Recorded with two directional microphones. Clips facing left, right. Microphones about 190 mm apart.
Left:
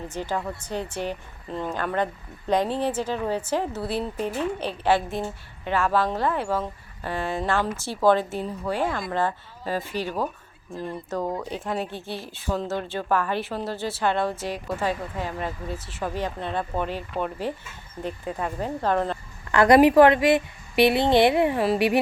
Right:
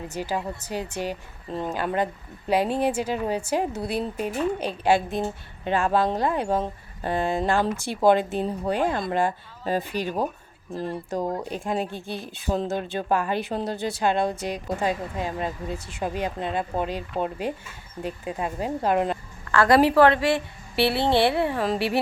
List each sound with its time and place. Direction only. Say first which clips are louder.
0.1 s speech: even; 10° right (ahead or behind)
19.5 s a woman's voice: left 3 dB; 15° left (ahead or behind)